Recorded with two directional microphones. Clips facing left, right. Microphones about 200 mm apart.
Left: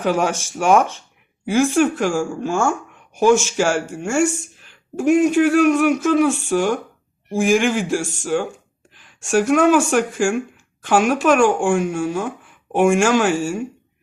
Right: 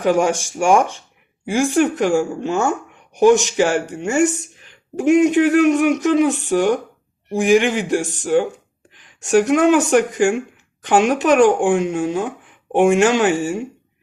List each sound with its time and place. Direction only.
0.0 s speech: 15° right (ahead or behind)
7.9 s speech: 15° right (ahead or behind)